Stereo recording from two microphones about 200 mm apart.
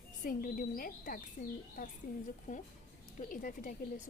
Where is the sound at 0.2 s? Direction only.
45° left (ahead or behind).